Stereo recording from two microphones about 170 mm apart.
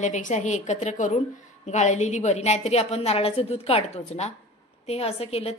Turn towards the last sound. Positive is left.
turn(degrees=35)  # may be behind; listen again after turning